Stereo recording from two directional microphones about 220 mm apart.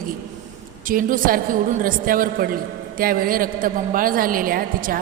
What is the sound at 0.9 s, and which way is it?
A woman's voice, 40° right (ahead or behind).